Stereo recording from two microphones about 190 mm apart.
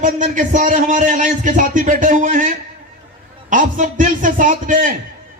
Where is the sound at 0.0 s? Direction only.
40° right (ahead or behind).